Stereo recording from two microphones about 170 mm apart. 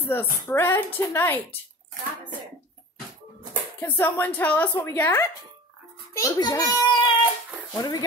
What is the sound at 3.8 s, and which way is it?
A woman's voice, 15° left (ahead or behind).